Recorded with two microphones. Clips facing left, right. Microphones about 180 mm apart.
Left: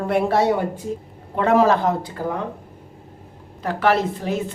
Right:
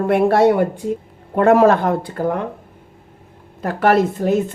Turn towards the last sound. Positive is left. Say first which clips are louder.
# right 6 dB
turn(degrees=-45)  # may be behind; listen again after turning